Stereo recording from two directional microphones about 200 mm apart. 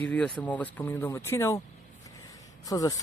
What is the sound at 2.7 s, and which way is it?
Speech, 15° left (ahead or behind).